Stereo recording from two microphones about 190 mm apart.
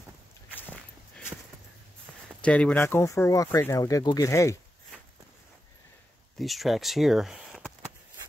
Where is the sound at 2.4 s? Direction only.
5° left (ahead or behind).